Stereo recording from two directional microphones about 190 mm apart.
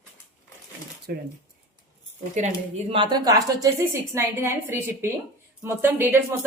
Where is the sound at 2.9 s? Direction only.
25° right (ahead or behind).